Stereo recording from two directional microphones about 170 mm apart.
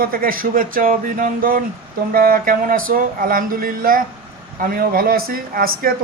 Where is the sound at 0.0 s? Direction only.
60° right (ahead or behind).